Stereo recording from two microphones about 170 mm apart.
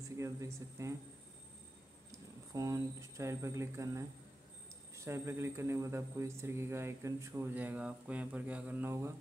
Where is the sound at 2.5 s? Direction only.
20° right (ahead or behind).